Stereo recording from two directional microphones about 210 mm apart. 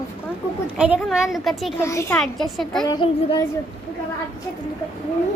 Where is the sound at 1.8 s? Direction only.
15° left (ahead or behind).